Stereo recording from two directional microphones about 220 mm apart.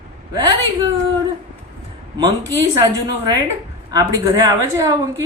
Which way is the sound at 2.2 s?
20° right (ahead or behind).